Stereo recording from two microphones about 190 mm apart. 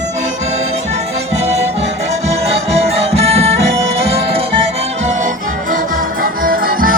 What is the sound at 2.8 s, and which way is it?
Music, 30° right (ahead or behind).